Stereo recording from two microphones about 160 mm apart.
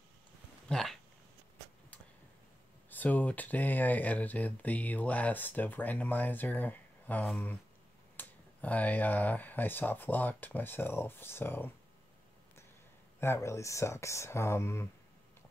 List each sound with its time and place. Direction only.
0.7 s speech: 5° left (ahead or behind)
2.9 s speech: 10° left (ahead or behind)
13.2 s speech: 15° left (ahead or behind)